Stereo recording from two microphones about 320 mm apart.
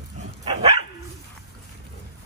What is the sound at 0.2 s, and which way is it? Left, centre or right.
Dog, right.